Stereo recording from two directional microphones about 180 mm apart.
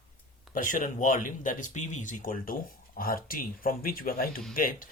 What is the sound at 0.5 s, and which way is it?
Speech, 45° left (ahead or behind).